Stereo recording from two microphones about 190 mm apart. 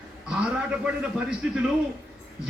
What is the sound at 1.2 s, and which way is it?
Speech, 5° right (ahead or behind).